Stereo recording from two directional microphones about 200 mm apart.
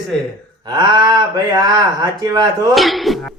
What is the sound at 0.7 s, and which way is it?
Speech, 20° right (ahead or behind).